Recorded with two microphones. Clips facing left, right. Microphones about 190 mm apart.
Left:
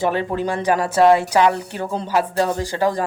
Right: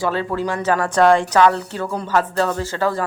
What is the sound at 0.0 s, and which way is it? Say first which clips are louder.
Speech: left 1 dB; 20° left (ahead or behind).